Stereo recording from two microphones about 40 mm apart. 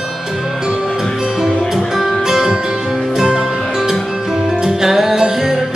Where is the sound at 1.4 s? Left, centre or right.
Centre.